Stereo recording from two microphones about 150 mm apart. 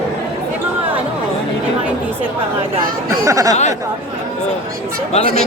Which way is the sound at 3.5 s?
50° left (ahead or behind).